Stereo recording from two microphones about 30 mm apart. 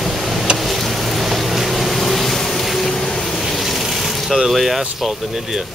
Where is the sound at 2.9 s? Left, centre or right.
Centre.